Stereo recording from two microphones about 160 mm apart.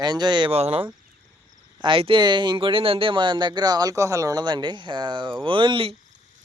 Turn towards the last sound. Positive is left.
turn(degrees=-30)  # may be behind; listen again after turning